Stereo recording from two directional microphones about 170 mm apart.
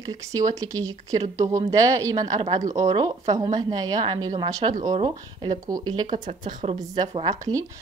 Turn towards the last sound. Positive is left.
turn(degrees=-25)  # may be behind; listen again after turning